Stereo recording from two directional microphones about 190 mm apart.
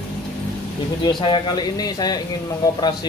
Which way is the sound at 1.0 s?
25° left (ahead or behind).